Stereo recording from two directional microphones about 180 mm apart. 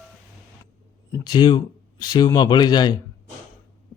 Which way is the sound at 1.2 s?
25° left (ahead or behind).